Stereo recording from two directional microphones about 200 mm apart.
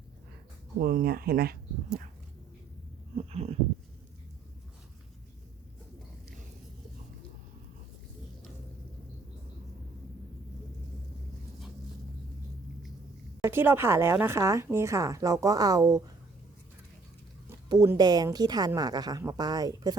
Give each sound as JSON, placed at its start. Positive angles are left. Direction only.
{"t": 0.8, "sound": "speech", "side_deg": -50}
{"t": 3.2, "sound": "a sound", "side_deg": -30}
{"t": 13.4, "sound": "a woman's voice", "side_deg": -10}
{"t": 17.7, "sound": "a woman's voice", "side_deg": -20}